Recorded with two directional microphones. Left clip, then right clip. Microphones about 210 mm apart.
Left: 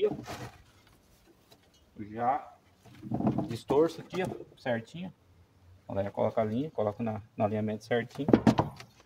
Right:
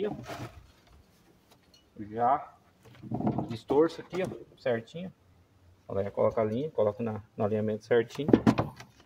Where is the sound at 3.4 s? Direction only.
5° right (ahead or behind).